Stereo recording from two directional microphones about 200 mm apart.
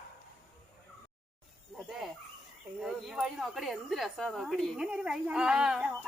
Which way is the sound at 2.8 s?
Centre (ahead or behind).